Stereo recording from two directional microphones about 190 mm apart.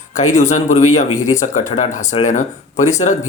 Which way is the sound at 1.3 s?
40° left (ahead or behind).